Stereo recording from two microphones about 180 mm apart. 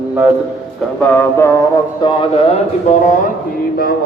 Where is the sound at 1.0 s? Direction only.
10° left (ahead or behind).